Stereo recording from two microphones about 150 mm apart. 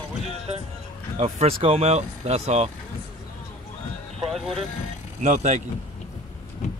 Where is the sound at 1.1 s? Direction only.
50° right (ahead or behind).